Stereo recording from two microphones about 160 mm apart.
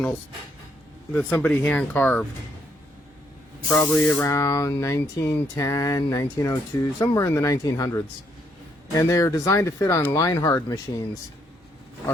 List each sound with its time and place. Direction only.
1.1 s speech: 10° left (ahead or behind)
3.7 s speech: 15° left (ahead or behind)